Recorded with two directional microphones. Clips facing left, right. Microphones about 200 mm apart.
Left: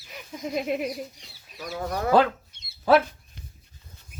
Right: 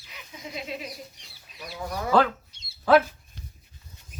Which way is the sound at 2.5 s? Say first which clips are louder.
Even; 55° left (ahead or behind).